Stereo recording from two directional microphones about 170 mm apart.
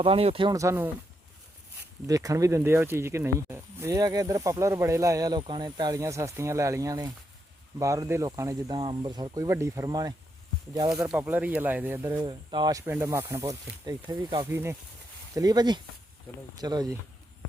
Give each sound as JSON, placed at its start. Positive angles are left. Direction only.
{"t": 0.0, "sound": "speech", "side_deg": -35}
{"t": 0.5, "sound": "speech", "side_deg": -20}
{"t": 2.0, "sound": "speech", "side_deg": -20}
{"t": 11.0, "sound": "speech", "side_deg": -10}
{"t": 12.2, "sound": "speech", "side_deg": -25}
{"t": 14.5, "sound": "speech", "side_deg": -15}